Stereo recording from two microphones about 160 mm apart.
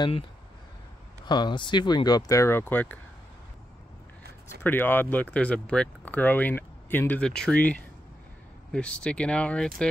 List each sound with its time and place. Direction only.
1.2 s speech: 25° left (ahead or behind); by 3.0 s 10° left (ahead or behind)
4.6 s speech: 10° left (ahead or behind)